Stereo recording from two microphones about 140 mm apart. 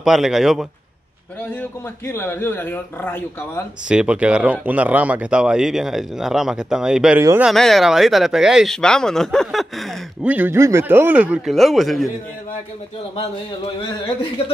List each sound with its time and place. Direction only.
0.0 s speech: 5° right (ahead or behind)
1.6 s speech: 15° left (ahead or behind)
3.9 s speech: 5° right (ahead or behind)
7.2 s speech: 20° right (ahead or behind)
7.4 s speech: centre (ahead or behind)
10.2 s speech: 15° right (ahead or behind)